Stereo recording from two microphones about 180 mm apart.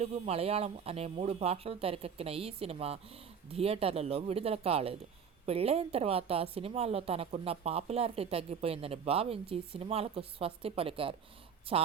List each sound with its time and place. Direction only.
0.0 s a woman's voice: 35° right (ahead or behind)